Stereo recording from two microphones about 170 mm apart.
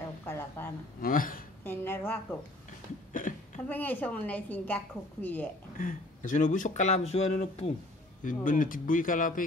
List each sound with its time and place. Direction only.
0.2 s a sound: 15° left (ahead or behind)
1.0 s a woman's voice: 55° left (ahead or behind)
1.6 s a woman's voice: 10° left (ahead or behind)
3.1 s a sound: 50° left (ahead or behind)
3.6 s a woman's voice: 10° left (ahead or behind)
5.8 s speech: 50° left (ahead or behind)
8.2 s speech: 50° left (ahead or behind)